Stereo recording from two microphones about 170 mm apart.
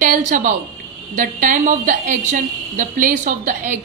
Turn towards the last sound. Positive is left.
turn(degrees=-50)  # may be behind; listen again after turning